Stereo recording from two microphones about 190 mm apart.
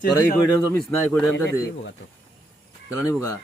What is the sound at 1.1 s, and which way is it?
Speech, 5° left (ahead or behind).